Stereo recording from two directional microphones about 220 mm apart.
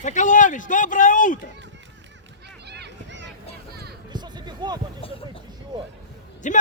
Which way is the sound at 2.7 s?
50° right (ahead or behind).